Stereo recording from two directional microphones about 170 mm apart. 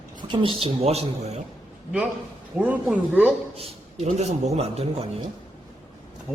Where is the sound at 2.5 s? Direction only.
10° right (ahead or behind).